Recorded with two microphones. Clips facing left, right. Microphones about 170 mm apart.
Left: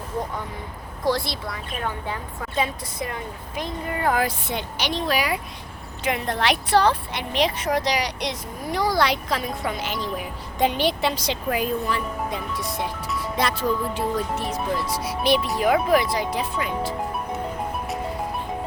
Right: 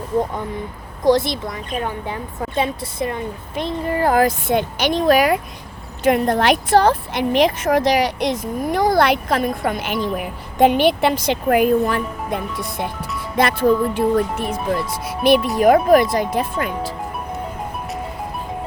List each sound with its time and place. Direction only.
1.0 s speech: 20° right (ahead or behind)
4.1 s a woman's voice: 45° right (ahead or behind)